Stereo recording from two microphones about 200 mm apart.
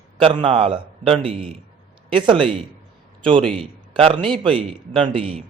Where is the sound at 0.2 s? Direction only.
25° right (ahead or behind).